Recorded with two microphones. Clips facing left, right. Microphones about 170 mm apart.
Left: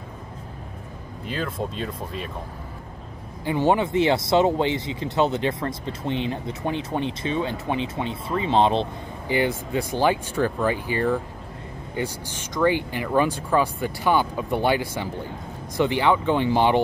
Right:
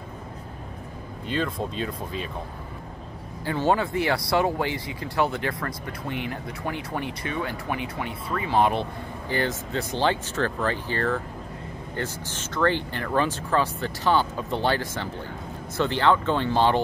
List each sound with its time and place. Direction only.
1.2 s speech: 5° left (ahead or behind)
3.4 s speech: 20° left (ahead or behind)